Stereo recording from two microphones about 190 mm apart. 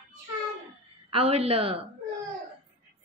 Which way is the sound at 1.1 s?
30° right (ahead or behind).